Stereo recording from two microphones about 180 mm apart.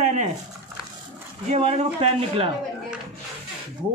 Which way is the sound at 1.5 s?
35° right (ahead or behind).